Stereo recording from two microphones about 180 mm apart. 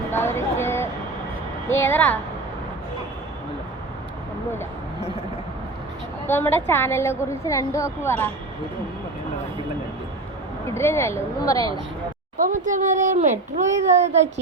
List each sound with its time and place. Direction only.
0.1 s a sound: 15° left (ahead or behind)
1.7 s a woman's voice: 10° left (ahead or behind)
6.2 s a woman's voice: 10° left (ahead or behind)
10.8 s a woman's voice: 15° left (ahead or behind)
12.4 s a child's voice: 45° right (ahead or behind)
13.9 s child singing: 40° right (ahead or behind)